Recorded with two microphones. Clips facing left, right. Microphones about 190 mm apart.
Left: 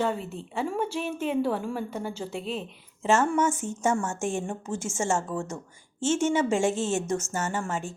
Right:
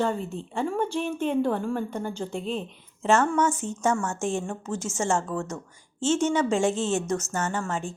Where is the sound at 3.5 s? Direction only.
50° left (ahead or behind).